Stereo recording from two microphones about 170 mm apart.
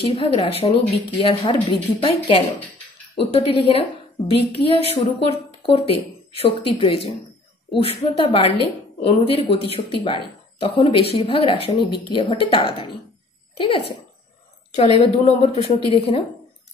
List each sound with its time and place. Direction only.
0.0 s a woman's voice: 35° left (ahead or behind)